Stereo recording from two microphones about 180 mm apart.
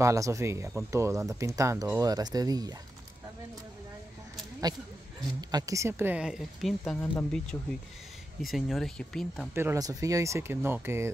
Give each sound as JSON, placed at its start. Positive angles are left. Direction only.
{"t": 0.0, "sound": "a woman's voice", "side_deg": -15}
{"t": 5.2, "sound": "a woman's voice", "side_deg": -20}
{"t": 7.5, "sound": "speech", "side_deg": 15}
{"t": 8.4, "sound": "speech", "side_deg": 0}
{"t": 9.5, "sound": "a woman's voice", "side_deg": -15}